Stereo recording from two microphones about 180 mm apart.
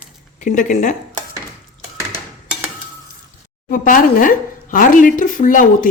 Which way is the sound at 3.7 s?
50° left (ahead or behind).